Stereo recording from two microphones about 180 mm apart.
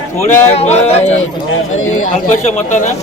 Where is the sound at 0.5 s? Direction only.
35° left (ahead or behind).